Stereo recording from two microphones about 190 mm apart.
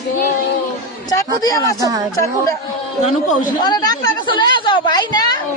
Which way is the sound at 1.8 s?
20° right (ahead or behind).